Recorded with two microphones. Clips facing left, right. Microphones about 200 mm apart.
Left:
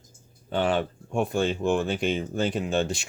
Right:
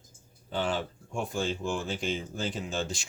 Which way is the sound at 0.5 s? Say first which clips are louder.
Left 6 dB; 60° left (ahead or behind).